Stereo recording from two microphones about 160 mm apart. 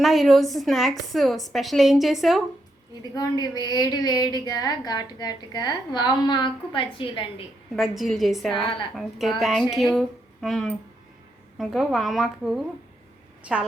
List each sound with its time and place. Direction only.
0.0 s a woman's voice: centre (ahead or behind)
3.0 s a woman's voice: 25° left (ahead or behind)
7.8 s a woman's voice: centre (ahead or behind)